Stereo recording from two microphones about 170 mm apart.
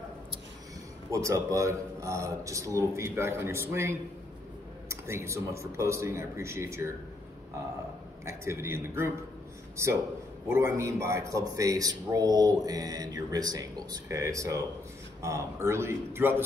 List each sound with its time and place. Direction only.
1.1 s a man's voice: 20° right (ahead or behind)
8.3 s a man's voice: 15° right (ahead or behind)
10.5 s a man's voice: 15° right (ahead or behind)